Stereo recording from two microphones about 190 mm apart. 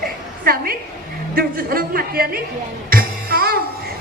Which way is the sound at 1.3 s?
50° right (ahead or behind).